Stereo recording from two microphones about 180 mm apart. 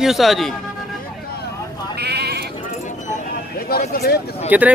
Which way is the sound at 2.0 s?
65° right (ahead or behind).